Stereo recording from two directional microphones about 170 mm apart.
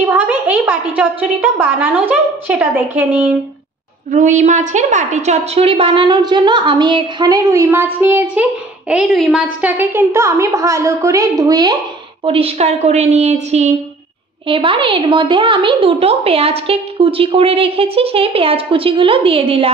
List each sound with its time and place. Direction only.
0.1 s a woman's voice: 10° right (ahead or behind)
4.1 s a woman's voice: 45° right (ahead or behind); by 11.8 s 25° right (ahead or behind)
12.3 s a woman's voice: 35° right (ahead or behind)